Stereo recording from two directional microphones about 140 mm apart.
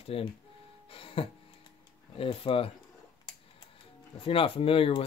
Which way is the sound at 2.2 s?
40° left (ahead or behind).